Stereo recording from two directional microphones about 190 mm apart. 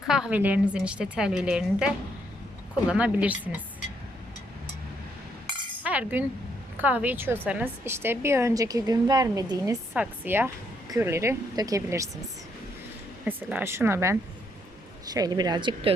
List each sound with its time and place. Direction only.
0.1 s a woman's voice: 5° right (ahead or behind)
2.9 s a woman's voice: 5° right (ahead or behind)
5.8 s chink: 10° right (ahead or behind)
6.7 s a woman's voice: 10° right (ahead or behind)
13.2 s a woman's voice: 10° right (ahead or behind)